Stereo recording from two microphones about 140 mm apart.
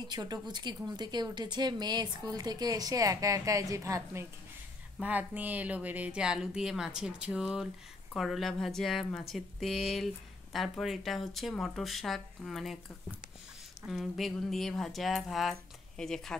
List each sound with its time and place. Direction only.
0.0 s a woman's voice: 30° right (ahead or behind); by 12.7 s centre (ahead or behind)
13.8 s speech: centre (ahead or behind)